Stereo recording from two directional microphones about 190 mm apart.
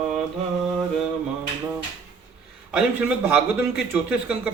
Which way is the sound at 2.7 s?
5° right (ahead or behind).